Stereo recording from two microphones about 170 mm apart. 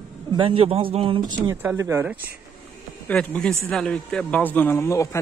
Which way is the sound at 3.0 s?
5° left (ahead or behind).